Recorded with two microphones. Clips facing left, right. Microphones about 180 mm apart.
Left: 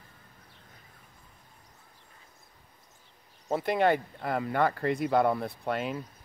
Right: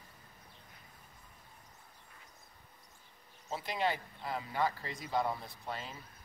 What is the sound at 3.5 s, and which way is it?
Speech, 55° left (ahead or behind).